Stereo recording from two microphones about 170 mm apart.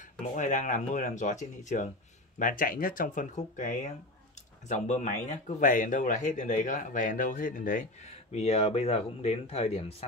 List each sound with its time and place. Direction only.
0.3 s speech: 45° left (ahead or behind)
8.3 s speech: 40° left (ahead or behind)